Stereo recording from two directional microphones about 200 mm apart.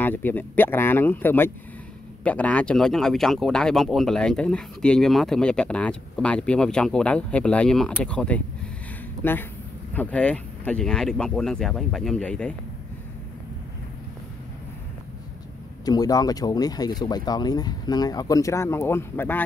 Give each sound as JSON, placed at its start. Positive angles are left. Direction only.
{"t": 0.0, "sound": "speech", "side_deg": 10}
{"t": 15.8, "sound": "speech", "side_deg": 20}